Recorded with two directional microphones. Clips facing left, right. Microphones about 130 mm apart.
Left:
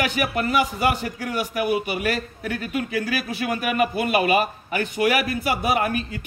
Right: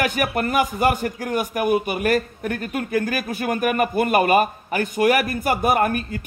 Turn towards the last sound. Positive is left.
turn(degrees=-50)  # may be behind; listen again after turning